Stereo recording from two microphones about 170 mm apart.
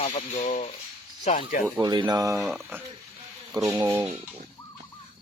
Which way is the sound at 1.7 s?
20° right (ahead or behind).